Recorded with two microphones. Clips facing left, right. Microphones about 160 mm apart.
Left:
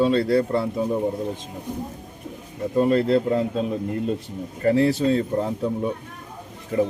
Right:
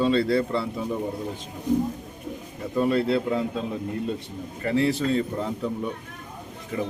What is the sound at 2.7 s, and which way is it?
Speech, 40° left (ahead or behind).